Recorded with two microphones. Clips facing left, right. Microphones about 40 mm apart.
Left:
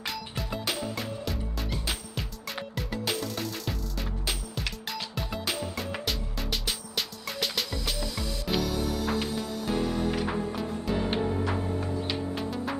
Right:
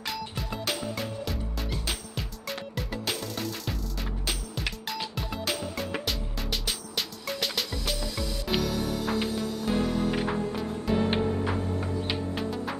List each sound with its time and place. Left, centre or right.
0.0 s music: centre
12.4 s music: centre